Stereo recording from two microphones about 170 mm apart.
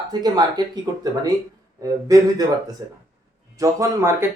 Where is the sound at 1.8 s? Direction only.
20° right (ahead or behind).